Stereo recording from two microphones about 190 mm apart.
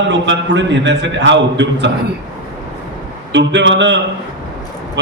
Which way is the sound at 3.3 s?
70° right (ahead or behind).